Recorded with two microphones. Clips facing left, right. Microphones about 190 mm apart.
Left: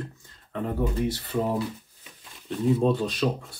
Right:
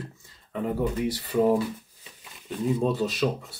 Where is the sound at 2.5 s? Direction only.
5° right (ahead or behind).